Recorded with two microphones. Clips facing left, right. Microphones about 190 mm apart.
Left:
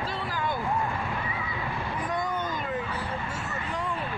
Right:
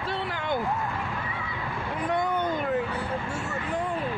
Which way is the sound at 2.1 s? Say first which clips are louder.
Right 6 dB; 60° right (ahead or behind).